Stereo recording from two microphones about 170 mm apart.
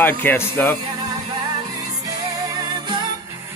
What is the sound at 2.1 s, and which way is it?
Music, 25° right (ahead or behind).